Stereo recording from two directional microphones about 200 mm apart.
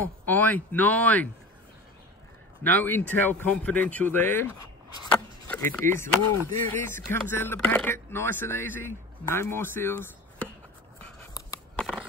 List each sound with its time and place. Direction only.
0.0 s speech: 10° left (ahead or behind)
2.6 s speech: 10° left (ahead or behind)
5.5 s speech: 10° left (ahead or behind)
11.3 s a sound: 15° left (ahead or behind)